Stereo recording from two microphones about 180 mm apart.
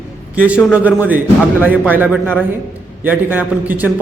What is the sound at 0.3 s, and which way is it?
A man's voice, 5° right (ahead or behind).